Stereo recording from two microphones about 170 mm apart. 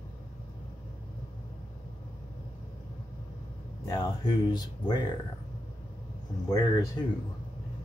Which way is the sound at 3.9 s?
25° left (ahead or behind).